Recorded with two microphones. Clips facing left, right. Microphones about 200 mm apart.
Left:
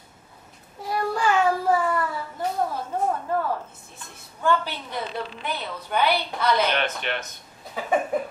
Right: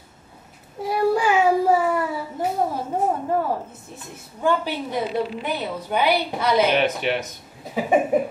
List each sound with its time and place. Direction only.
0.8 s child singing: 10° right (ahead or behind)
2.6 s a sound: 20° right (ahead or behind)
4.4 s a woman's voice: 10° right (ahead or behind)